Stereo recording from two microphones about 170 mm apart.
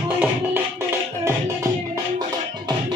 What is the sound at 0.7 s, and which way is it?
Music, 15° right (ahead or behind).